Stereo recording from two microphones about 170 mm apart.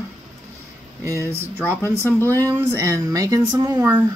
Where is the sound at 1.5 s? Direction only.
10° left (ahead or behind).